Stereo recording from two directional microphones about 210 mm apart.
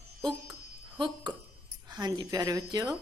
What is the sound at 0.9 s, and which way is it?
A woman's voice, 20° right (ahead or behind).